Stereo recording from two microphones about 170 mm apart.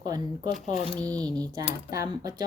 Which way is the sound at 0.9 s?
5° left (ahead or behind).